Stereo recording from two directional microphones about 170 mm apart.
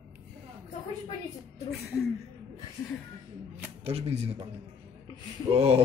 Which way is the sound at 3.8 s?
35° right (ahead or behind).